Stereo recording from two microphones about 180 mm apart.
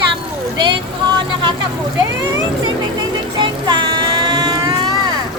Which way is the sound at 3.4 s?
25° right (ahead or behind).